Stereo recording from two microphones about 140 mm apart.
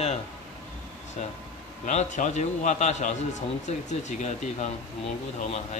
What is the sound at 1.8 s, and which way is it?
A man's voice, 60° left (ahead or behind).